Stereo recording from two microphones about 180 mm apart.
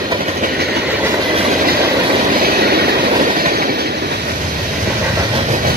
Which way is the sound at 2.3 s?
60° right (ahead or behind).